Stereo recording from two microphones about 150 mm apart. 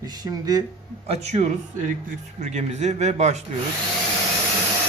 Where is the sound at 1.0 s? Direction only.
45° right (ahead or behind).